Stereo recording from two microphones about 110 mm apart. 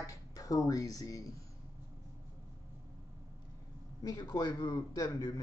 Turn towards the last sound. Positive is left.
turn(degrees=35)  # may be behind; listen again after turning